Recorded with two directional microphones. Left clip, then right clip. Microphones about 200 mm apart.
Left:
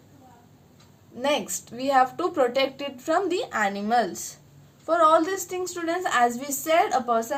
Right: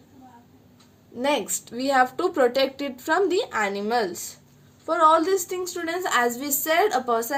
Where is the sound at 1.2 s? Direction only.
35° right (ahead or behind).